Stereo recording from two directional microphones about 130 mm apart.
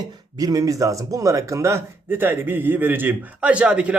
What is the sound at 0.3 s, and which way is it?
Speech, 30° right (ahead or behind).